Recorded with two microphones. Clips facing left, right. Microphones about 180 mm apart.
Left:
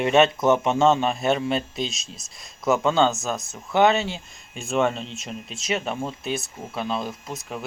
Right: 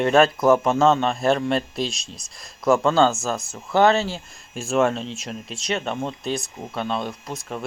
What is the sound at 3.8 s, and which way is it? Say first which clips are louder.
Speech: right 1 dB; 20° left (ahead or behind).